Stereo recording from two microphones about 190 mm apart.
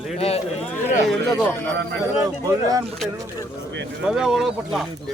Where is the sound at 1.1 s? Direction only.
5° left (ahead or behind).